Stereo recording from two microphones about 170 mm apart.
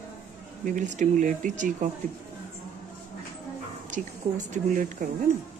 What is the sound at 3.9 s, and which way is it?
Speech, 45° right (ahead or behind).